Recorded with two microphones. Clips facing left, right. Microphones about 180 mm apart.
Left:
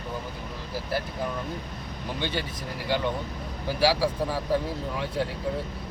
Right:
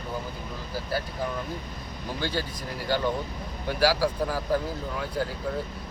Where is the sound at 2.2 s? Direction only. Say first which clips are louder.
Right 1 dB; centre (ahead or behind).